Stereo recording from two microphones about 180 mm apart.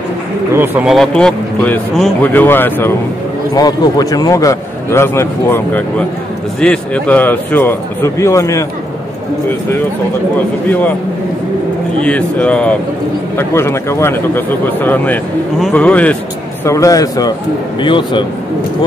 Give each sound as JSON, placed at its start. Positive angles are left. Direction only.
{"t": 0.6, "sound": "a man's voice", "side_deg": -5}
{"t": 10.3, "sound": "a man's voice", "side_deg": 10}
{"t": 12.0, "sound": "a man's voice", "side_deg": 5}
{"t": 16.6, "sound": "speech", "side_deg": 15}